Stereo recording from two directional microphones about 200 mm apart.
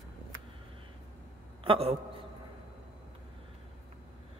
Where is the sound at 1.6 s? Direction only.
30° right (ahead or behind).